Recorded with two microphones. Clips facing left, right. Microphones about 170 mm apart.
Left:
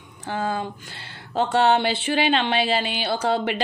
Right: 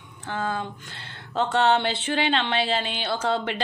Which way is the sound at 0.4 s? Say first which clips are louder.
Left 2 dB; 20° left (ahead or behind).